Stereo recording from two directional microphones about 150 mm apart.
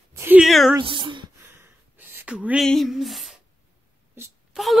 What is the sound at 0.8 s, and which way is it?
Speech, 35° right (ahead or behind).